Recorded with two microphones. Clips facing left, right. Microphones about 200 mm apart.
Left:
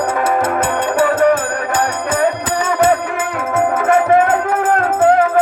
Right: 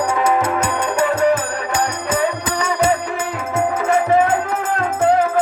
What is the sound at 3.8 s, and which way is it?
Music, 55° left (ahead or behind).